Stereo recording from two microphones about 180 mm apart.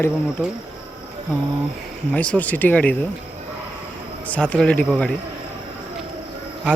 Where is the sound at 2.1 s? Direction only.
5° left (ahead or behind).